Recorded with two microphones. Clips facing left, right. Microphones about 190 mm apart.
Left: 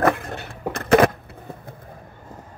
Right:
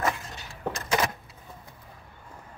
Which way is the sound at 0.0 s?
60° left (ahead or behind).